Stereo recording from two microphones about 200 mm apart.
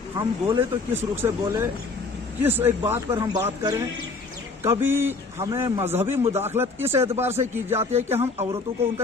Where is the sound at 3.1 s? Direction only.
25° right (ahead or behind).